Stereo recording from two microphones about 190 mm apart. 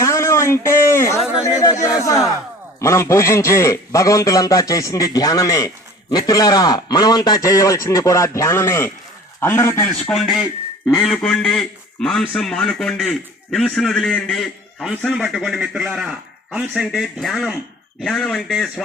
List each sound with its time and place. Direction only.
0.0 s a sound: 15° left (ahead or behind)
1.5 s a man's voice: 15° left (ahead or behind)
9.9 s a man's voice: centre (ahead or behind)